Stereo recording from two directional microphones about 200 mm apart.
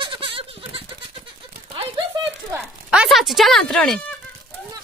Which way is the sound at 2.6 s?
5° right (ahead or behind).